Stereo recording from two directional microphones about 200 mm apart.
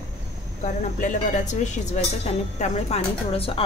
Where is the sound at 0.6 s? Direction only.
40° left (ahead or behind).